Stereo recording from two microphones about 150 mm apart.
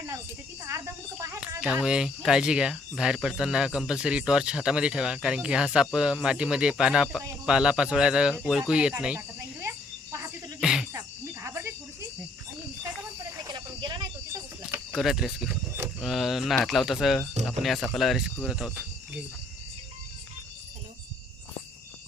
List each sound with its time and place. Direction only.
0.6 s speech: 20° right (ahead or behind)
1.6 s speech: 5° right (ahead or behind)
9.4 s cricket: 20° right (ahead or behind)
10.6 s a sound: 5° right (ahead or behind)
10.9 s cricket: 15° right (ahead or behind)
13.5 s a sound: 30° right (ahead or behind)
14.9 s speech: centre (ahead or behind)